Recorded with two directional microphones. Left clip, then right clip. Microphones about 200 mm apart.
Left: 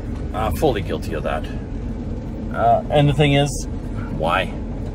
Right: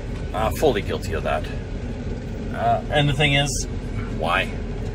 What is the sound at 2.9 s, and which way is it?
Speech, 30° left (ahead or behind).